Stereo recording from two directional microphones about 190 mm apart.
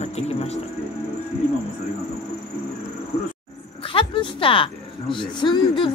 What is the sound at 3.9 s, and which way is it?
Speech, 30° left (ahead or behind).